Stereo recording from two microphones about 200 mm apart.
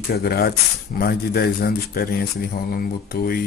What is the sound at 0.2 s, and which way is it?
Speech, 50° left (ahead or behind).